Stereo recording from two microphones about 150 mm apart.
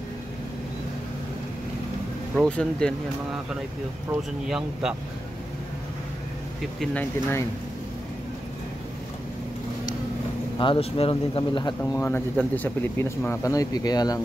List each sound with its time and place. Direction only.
2.3 s speech: 5° left (ahead or behind)
4.5 s speech: 5° right (ahead or behind)
6.8 s speech: 10° left (ahead or behind)
10.6 s speech: 40° left (ahead or behind)
11.8 s speech: 15° left (ahead or behind)